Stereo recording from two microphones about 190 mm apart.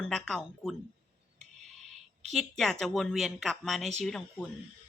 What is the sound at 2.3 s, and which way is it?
A woman's voice, centre (ahead or behind).